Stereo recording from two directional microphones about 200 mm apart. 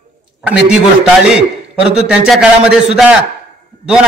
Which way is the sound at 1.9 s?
Centre (ahead or behind).